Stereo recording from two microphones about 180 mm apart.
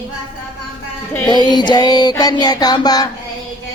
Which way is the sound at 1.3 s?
25° left (ahead or behind).